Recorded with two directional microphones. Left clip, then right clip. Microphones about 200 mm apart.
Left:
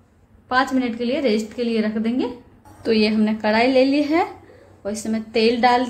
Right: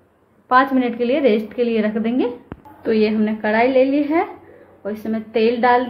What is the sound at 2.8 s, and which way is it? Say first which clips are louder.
A woman's voice: right 1 dB; 15° left (ahead or behind).